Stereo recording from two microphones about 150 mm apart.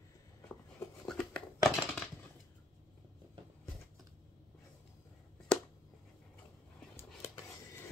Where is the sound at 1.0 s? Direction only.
5° left (ahead or behind).